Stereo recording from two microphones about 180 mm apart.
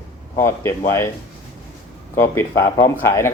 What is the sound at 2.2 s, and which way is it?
A man's voice, 15° left (ahead or behind).